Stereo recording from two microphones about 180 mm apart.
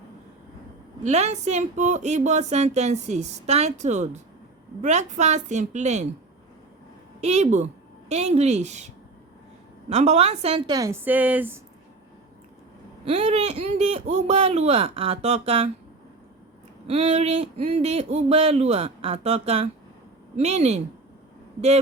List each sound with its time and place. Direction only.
1.0 s speech: 40° right (ahead or behind)
7.2 s speech: 40° right (ahead or behind)
9.9 s speech: 35° right (ahead or behind)
10.7 s a woman's voice: 20° right (ahead or behind)
13.1 s speech: 35° right (ahead or behind)
16.8 s speech: 35° right (ahead or behind)